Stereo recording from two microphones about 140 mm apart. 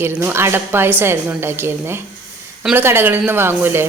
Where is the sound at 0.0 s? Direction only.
20° right (ahead or behind).